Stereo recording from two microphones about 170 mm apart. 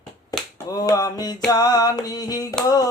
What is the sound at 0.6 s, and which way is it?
Finger snapping, 20° left (ahead or behind).